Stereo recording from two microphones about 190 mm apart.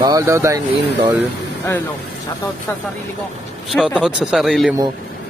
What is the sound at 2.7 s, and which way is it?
Speech, 10° left (ahead or behind).